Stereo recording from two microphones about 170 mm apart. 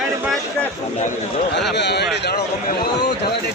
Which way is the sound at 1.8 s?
80° left.